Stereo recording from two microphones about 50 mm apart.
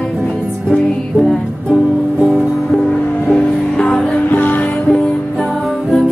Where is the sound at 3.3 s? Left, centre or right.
Centre.